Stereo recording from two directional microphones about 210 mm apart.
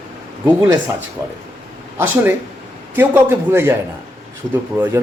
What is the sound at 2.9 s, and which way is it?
Speech, 10° right (ahead or behind).